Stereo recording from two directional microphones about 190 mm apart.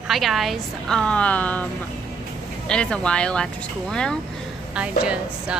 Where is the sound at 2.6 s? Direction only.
5° left (ahead or behind).